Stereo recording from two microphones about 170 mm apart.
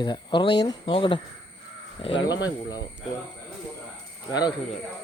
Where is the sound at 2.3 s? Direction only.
20° left (ahead or behind).